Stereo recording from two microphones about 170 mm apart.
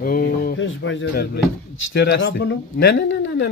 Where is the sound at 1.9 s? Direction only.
90° left.